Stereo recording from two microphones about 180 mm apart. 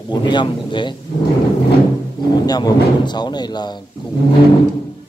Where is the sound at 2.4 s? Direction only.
20° left (ahead or behind).